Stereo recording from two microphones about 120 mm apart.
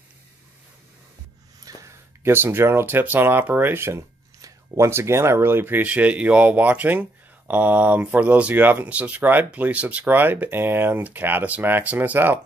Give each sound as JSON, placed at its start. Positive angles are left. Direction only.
{"t": 1.6, "sound": "speech", "side_deg": -30}